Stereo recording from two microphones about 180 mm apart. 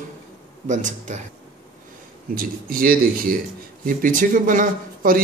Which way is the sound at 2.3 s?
55° right (ahead or behind).